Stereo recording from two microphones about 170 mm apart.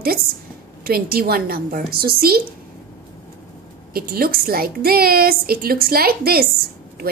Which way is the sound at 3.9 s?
60° right (ahead or behind).